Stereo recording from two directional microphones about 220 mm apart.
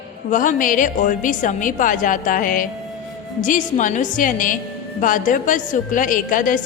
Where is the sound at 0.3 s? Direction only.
35° left (ahead or behind).